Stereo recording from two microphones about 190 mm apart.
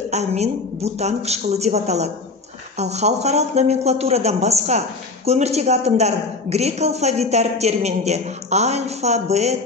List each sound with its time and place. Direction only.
0.1 s speech: 35° right (ahead or behind)